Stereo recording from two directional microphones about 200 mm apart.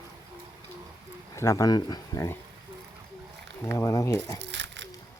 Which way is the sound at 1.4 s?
15° left (ahead or behind).